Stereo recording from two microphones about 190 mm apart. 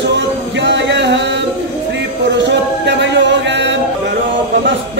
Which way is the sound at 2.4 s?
70° right (ahead or behind).